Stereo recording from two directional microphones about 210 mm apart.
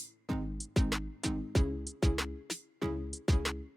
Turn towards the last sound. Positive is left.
turn(degrees=0)  # may be behind; listen again after turning